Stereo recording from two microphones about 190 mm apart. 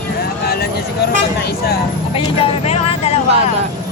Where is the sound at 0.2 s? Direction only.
55° left (ahead or behind).